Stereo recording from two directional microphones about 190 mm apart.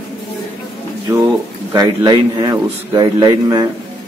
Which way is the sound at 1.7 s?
20° right (ahead or behind).